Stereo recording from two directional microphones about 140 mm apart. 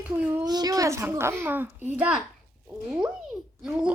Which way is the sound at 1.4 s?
15° right (ahead or behind).